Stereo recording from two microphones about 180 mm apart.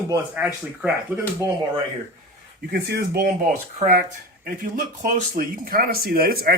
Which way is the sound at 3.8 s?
55° right (ahead or behind).